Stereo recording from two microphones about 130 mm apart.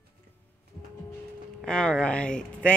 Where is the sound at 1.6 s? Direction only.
5° left (ahead or behind).